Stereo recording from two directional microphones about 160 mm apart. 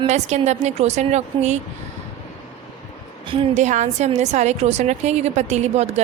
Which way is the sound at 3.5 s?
50° right (ahead or behind).